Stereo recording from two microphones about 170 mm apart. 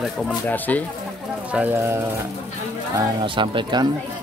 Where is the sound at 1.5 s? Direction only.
10° right (ahead or behind).